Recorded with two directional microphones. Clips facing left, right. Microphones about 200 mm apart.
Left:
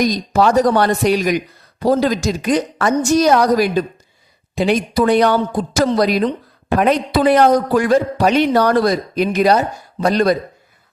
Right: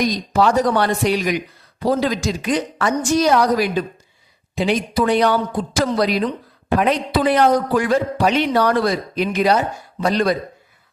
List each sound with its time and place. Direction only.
0.0 s speech: 45° left (ahead or behind)